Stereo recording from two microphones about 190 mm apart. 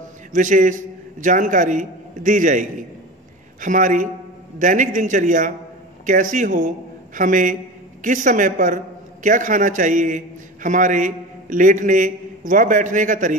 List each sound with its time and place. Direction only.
0.3 s a man's voice: 45° right (ahead or behind)